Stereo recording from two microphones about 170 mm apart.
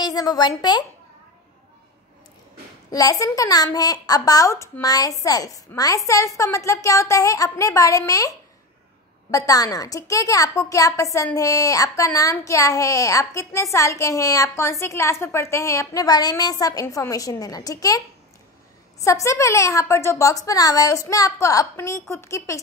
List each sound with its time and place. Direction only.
0.0 s a woman's voice: 20° left (ahead or behind)
2.9 s a woman's voice: 20° left (ahead or behind)
19.0 s a woman's voice: 20° left (ahead or behind)